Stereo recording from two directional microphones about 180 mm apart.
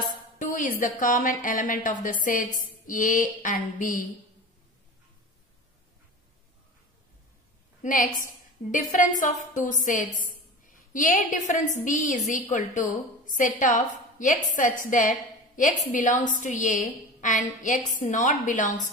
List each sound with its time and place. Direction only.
0.0 s speech: 45° left (ahead or behind)
7.8 s a woman's voice: 45° left (ahead or behind)